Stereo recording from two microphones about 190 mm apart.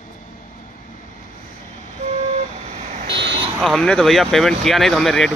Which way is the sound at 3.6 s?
Centre (ahead or behind).